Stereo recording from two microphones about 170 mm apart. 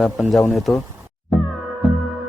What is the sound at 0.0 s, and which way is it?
Speech, centre (ahead or behind).